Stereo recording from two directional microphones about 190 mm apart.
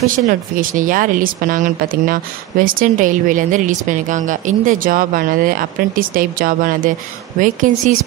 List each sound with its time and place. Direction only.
0.3 s a woman's voice: 45° right (ahead or behind)